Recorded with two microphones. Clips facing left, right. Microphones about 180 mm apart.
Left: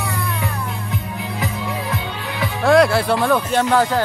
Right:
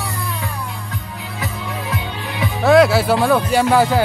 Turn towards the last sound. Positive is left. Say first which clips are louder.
# right 2 dB
turn(degrees=-10)  # may be behind; listen again after turning